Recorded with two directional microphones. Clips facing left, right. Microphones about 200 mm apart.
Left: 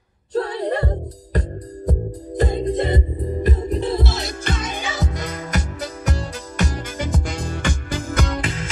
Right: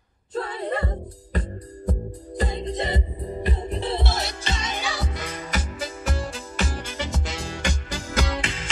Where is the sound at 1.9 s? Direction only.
45° left (ahead or behind).